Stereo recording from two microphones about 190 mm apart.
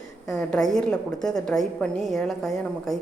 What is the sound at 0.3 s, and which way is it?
A woman's voice, centre (ahead or behind).